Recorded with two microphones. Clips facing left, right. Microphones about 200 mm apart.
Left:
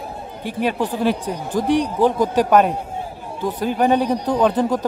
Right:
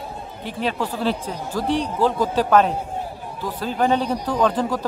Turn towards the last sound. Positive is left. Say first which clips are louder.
# left 3 dB
turn(degrees=20)  # may be behind; listen again after turning